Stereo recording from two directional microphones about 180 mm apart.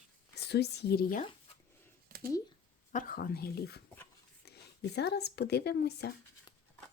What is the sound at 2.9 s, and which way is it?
Speech, 50° left (ahead or behind).